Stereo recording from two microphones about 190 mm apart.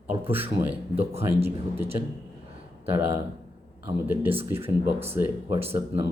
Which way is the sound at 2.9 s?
10° right (ahead or behind).